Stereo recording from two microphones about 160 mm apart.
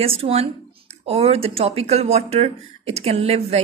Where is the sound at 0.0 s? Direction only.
35° right (ahead or behind).